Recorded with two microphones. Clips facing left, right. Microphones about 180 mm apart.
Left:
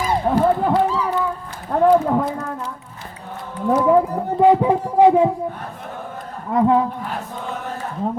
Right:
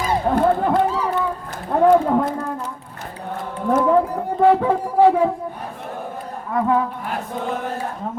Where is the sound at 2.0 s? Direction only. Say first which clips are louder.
Right 1 dB; centre (ahead or behind).